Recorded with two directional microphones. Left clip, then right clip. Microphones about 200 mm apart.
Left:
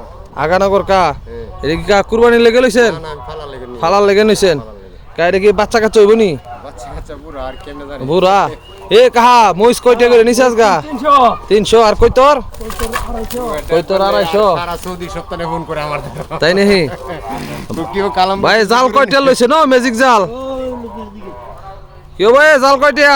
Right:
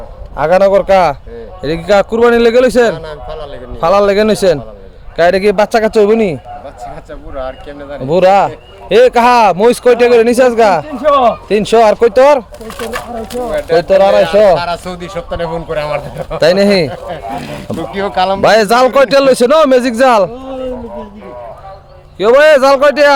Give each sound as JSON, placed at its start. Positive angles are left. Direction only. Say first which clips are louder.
{"t": 0.3, "sound": "speech", "louder": "right 4 dB", "side_deg": -10}
{"t": 8.0, "sound": "speech", "louder": "right 3 dB", "side_deg": -15}
{"t": 13.7, "sound": "speech", "louder": "right 5 dB", "side_deg": -20}
{"t": 14.5, "sound": "speech", "louder": "right 4 dB", "side_deg": -50}
{"t": 14.8, "sound": "speech", "louder": "right 2 dB", "side_deg": -20}
{"t": 15.3, "sound": "speech", "louder": "right 2 dB", "side_deg": -5}
{"t": 18.4, "sound": "speech", "louder": "right 4 dB", "side_deg": -20}
{"t": 22.2, "sound": "speech", "louder": "right 1 dB", "side_deg": -5}